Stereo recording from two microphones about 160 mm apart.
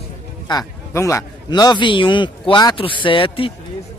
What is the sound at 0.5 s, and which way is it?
A man's voice, 20° left (ahead or behind).